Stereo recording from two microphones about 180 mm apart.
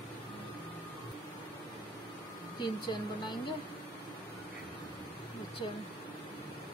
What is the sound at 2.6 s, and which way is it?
Speech, 25° left (ahead or behind).